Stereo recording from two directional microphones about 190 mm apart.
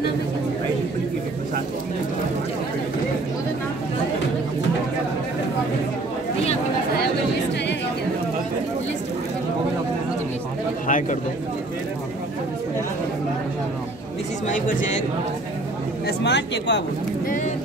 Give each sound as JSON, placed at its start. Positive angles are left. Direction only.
{"t": 10.9, "sound": "speech", "side_deg": 40}
{"t": 14.5, "sound": "speech", "side_deg": 45}
{"t": 16.1, "sound": "speech", "side_deg": 65}